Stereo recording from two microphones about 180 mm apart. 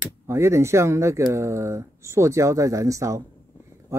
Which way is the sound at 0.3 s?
15° right (ahead or behind).